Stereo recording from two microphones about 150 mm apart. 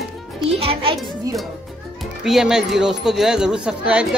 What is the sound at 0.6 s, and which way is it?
Speech, 40° right (ahead or behind).